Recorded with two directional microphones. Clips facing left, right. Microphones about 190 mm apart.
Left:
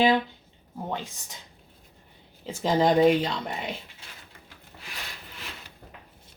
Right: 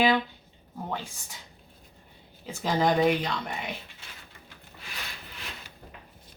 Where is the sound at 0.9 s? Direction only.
20° left (ahead or behind).